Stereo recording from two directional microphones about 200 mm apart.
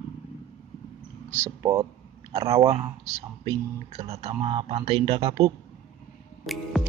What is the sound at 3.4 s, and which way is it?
Speech, 25° right (ahead or behind).